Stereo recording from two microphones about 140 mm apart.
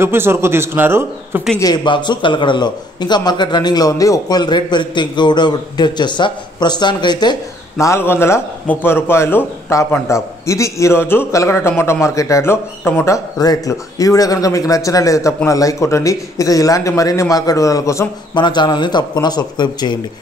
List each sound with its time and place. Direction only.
0.0 s speech: 15° right (ahead or behind)
1.6 s a man's voice: 30° left (ahead or behind)
7.7 s a man's voice: 20° left (ahead or behind)